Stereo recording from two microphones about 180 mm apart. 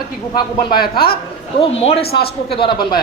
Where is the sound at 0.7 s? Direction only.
55° left (ahead or behind).